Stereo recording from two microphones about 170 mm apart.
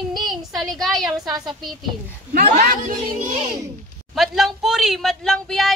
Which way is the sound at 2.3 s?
65° right (ahead or behind).